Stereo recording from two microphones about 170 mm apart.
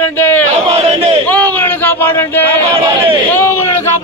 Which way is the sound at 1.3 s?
10° left (ahead or behind).